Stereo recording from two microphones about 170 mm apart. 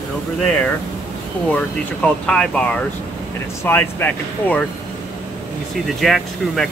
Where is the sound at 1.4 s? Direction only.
5° left (ahead or behind).